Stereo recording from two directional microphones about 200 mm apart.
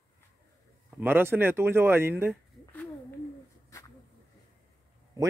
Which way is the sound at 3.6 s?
15° left (ahead or behind).